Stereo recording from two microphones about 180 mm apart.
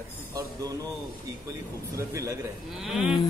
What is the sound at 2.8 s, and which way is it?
Speech, centre (ahead or behind).